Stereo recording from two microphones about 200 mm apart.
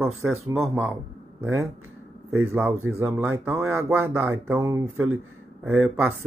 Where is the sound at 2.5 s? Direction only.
10° right (ahead or behind).